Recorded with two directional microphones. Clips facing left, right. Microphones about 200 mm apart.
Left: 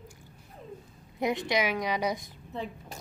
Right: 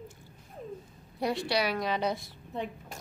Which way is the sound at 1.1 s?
20° left (ahead or behind).